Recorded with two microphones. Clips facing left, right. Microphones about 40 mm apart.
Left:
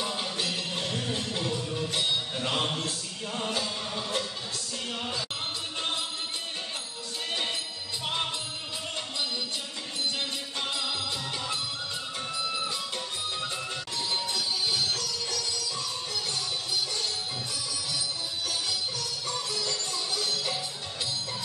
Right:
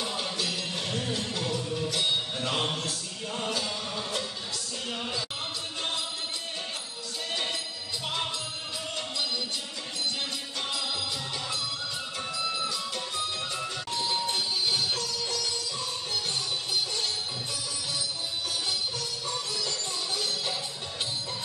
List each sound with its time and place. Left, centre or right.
0.4 s music: centre
2.4 s music: left